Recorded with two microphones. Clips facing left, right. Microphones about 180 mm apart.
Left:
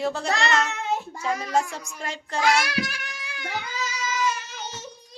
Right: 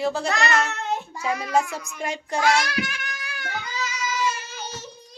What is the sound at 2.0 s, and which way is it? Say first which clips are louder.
Speech: right 3 dB; 15° right (ahead or behind).